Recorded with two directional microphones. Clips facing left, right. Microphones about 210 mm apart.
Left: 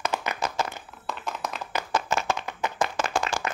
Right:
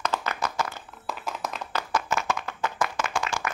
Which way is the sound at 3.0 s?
35° left (ahead or behind).